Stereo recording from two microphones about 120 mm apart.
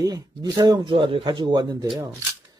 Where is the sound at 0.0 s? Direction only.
35° right (ahead or behind).